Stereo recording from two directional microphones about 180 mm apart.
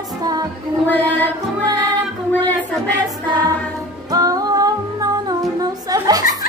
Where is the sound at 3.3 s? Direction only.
20° right (ahead or behind).